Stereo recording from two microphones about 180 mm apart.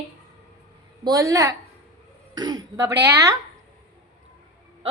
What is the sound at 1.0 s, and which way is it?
Speech, 20° right (ahead or behind).